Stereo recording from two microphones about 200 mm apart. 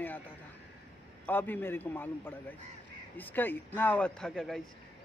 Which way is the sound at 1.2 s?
10° left (ahead or behind).